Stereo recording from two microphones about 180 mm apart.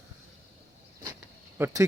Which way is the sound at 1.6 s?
15° right (ahead or behind).